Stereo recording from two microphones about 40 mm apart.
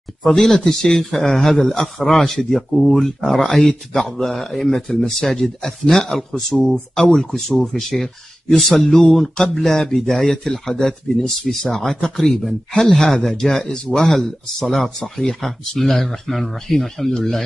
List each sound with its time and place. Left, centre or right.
0.4 s speech: centre
8.8 s speech: left
9.1 s speech: centre